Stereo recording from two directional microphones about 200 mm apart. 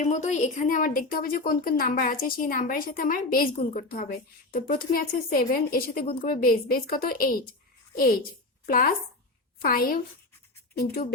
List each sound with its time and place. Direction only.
0.0 s a woman's voice: 35° left (ahead or behind)
8.6 s a woman's voice: 45° left (ahead or behind)